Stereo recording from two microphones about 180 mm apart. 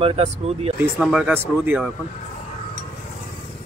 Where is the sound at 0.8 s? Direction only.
5° right (ahead or behind).